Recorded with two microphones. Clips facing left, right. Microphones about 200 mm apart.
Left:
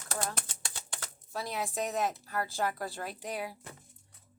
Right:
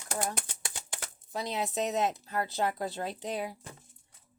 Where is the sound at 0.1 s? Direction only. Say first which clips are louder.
Right 3 dB; 15° right (ahead or behind).